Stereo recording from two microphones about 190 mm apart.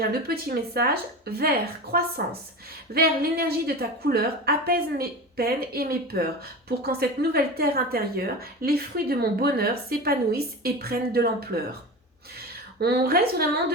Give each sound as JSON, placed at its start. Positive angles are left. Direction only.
{"t": 0.0, "sound": "a woman's voice", "side_deg": -55}
{"t": 12.8, "sound": "a woman's voice", "side_deg": -55}